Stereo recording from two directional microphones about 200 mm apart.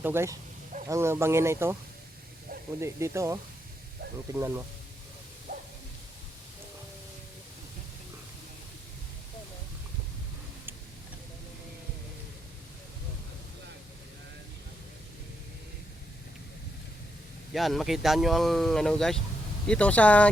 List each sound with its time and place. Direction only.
0.0 s speech: 10° right (ahead or behind)
2.8 s speech: 15° right (ahead or behind)
5.5 s a sound: 40° right (ahead or behind)
17.5 s speech: centre (ahead or behind)